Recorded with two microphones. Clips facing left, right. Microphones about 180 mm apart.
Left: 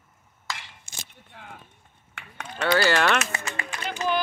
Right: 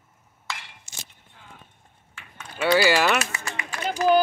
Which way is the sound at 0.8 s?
65° left (ahead or behind).